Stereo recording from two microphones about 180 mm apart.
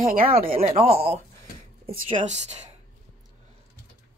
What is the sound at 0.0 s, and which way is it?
Speech, 50° right (ahead or behind).